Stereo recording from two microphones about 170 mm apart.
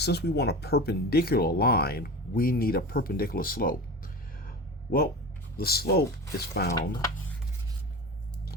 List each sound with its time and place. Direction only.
0.0 s speech: 75° left (ahead or behind)